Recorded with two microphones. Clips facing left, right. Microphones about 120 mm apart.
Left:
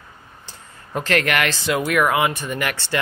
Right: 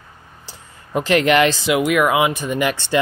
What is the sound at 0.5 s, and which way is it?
Speech, 15° right (ahead or behind).